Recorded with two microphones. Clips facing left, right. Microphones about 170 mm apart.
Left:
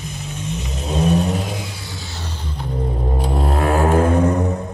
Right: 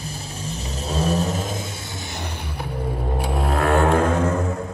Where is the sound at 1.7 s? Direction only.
20° right (ahead or behind).